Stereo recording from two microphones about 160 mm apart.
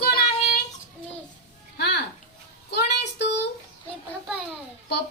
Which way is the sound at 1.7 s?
90° left.